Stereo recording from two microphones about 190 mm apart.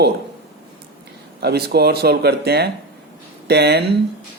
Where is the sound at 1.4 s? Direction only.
60° right (ahead or behind).